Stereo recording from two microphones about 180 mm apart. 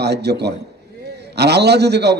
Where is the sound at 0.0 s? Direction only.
65° right (ahead or behind).